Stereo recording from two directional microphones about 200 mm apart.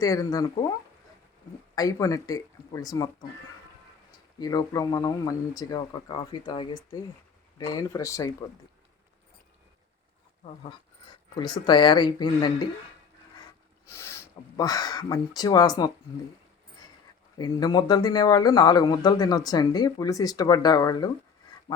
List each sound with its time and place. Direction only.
0.0 s speech: 15° left (ahead or behind)
1.7 s speech: 15° left (ahead or behind)
4.4 s speech: 20° left (ahead or behind)
10.4 s speech: 30° left (ahead or behind)
13.8 s speech: 15° left (ahead or behind)
17.3 s speech: 20° left (ahead or behind)